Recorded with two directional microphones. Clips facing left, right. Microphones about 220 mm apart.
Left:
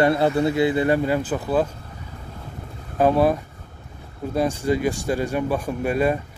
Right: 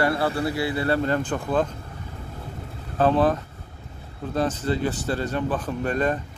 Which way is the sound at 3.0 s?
10° left (ahead or behind).